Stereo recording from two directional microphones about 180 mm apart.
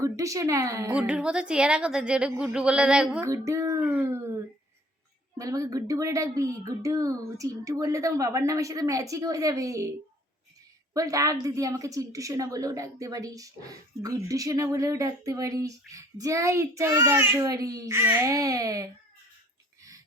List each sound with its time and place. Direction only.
0.0 s speech: 15° right (ahead or behind)
0.9 s a woman's voice: 5° right (ahead or behind)
3.2 s speech: 15° right (ahead or behind)
10.9 s a woman's voice: 20° right (ahead or behind)